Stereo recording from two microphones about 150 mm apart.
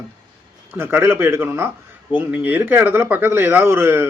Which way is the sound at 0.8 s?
15° right (ahead or behind).